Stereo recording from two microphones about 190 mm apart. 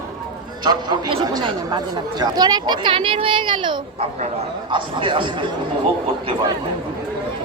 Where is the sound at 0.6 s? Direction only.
20° right (ahead or behind).